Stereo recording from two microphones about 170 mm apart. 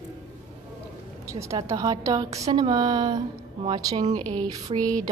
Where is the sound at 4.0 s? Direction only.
45° right (ahead or behind).